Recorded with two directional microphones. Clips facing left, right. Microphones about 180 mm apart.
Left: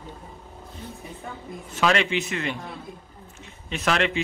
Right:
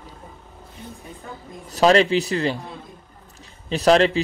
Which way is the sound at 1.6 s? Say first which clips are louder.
Right 7 dB; 35° right (ahead or behind).